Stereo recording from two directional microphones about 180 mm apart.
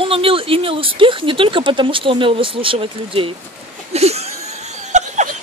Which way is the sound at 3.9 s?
35° right (ahead or behind).